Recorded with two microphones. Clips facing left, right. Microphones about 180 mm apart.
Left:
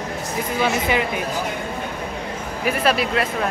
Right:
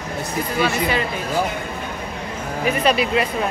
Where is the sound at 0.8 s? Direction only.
15° left (ahead or behind).